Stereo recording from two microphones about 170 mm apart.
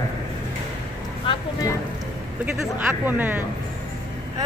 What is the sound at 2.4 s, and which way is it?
Speech, 5° right (ahead or behind).